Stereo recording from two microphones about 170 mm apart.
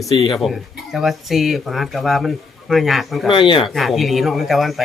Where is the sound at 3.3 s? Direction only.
30° left (ahead or behind).